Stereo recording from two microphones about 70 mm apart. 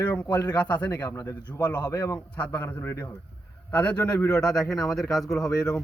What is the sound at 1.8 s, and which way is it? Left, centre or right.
Speech, left.